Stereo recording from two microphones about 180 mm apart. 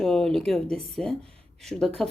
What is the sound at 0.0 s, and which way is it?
Speech, 5° left (ahead or behind).